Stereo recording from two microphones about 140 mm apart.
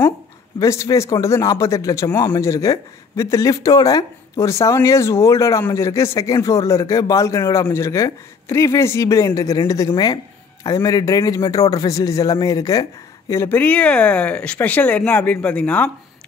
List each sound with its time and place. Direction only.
0.6 s speech: 20° left (ahead or behind)